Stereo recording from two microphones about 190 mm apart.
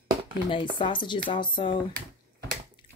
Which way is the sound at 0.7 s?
25° left (ahead or behind).